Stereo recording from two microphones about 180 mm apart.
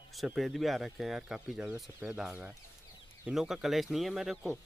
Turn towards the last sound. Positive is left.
turn(degrees=0)  # may be behind; listen again after turning